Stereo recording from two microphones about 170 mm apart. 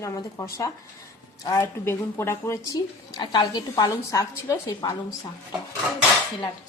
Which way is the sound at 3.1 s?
25° left (ahead or behind).